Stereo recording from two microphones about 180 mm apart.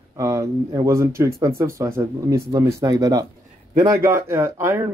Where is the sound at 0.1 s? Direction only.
15° right (ahead or behind).